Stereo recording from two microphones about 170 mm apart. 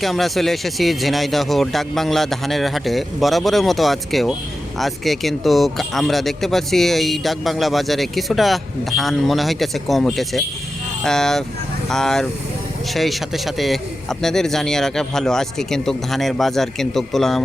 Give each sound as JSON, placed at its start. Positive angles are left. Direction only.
{"t": 0.0, "sound": "speech", "side_deg": 0}